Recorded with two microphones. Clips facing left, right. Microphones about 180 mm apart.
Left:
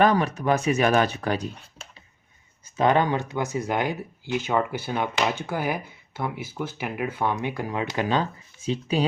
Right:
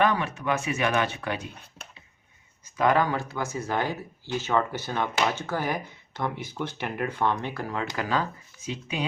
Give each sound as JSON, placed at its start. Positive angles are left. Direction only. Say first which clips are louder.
{"t": 0.0, "sound": "speech", "louder": "left 4 dB", "side_deg": 40}
{"t": 2.7, "sound": "speech", "louder": "left 2 dB", "side_deg": 25}